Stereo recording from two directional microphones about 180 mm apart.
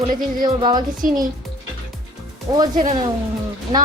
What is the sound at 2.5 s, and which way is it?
Speech, 20° right (ahead or behind).